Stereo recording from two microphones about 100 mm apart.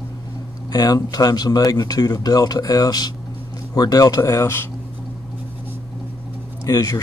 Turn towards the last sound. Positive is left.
turn(degrees=35)  # may be behind; listen again after turning